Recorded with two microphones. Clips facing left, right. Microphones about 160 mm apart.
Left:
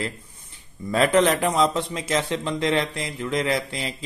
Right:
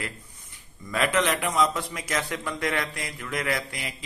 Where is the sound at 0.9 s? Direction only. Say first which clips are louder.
Left 6 dB; 35° left (ahead or behind).